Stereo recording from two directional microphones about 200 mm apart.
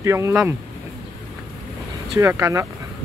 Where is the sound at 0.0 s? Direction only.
15° right (ahead or behind).